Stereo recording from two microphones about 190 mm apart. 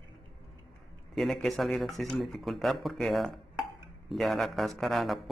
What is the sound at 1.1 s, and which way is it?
Speech, centre (ahead or behind).